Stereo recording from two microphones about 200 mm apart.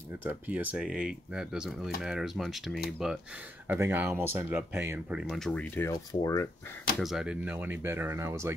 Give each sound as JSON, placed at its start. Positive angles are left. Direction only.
{"t": 0.2, "sound": "speech", "side_deg": -10}
{"t": 5.3, "sound": "speech", "side_deg": 5}
{"t": 5.9, "sound": "speech", "side_deg": 15}
{"t": 7.0, "sound": "speech", "side_deg": 0}